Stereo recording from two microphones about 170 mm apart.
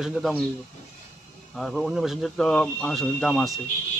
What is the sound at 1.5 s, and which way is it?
Speech, centre (ahead or behind).